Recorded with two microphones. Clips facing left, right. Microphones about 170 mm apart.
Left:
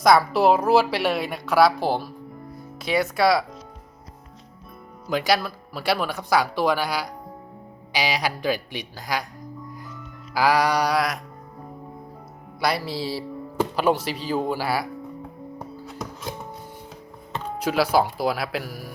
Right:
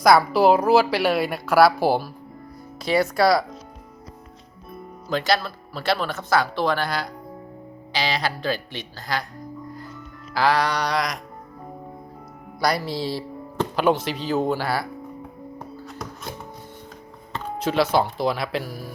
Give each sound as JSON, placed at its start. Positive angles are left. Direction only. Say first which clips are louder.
{"t": 0.0, "sound": "a woman's voice", "louder": "right 1 dB", "side_deg": 0}
{"t": 5.0, "sound": "speech", "louder": "even", "side_deg": 10}
{"t": 10.3, "sound": "speech", "louder": "left 1 dB", "side_deg": 10}
{"t": 12.6, "sound": "speech", "louder": "right 1 dB", "side_deg": 5}
{"t": 17.3, "sound": "speech", "louder": "right 1 dB", "side_deg": 10}